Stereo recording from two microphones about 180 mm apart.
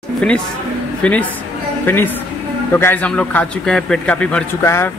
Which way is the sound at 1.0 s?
5° left (ahead or behind).